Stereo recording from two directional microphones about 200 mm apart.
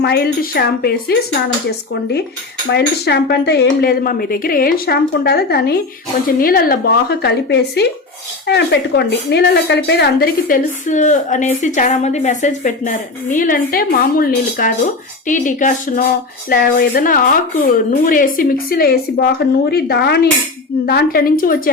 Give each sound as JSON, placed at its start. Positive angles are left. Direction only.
{"t": 0.0, "sound": "speech", "side_deg": 55}
{"t": 2.6, "sound": "a woman's voice", "side_deg": 55}